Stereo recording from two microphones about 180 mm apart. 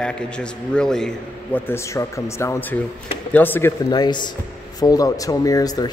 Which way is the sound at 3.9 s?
25° left (ahead or behind).